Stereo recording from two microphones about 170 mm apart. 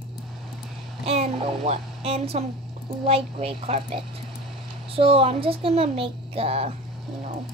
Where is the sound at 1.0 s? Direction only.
35° right (ahead or behind).